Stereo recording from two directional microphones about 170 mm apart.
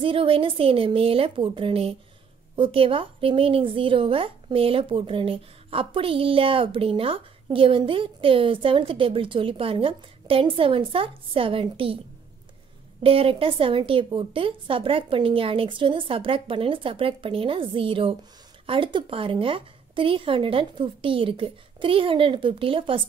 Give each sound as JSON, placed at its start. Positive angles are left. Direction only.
{"t": 0.0, "sound": "speech", "side_deg": -30}
{"t": 13.0, "sound": "speech", "side_deg": -35}